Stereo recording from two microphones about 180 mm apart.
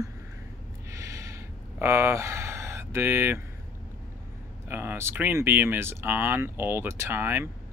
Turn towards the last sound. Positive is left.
turn(degrees=-10)  # may be behind; listen again after turning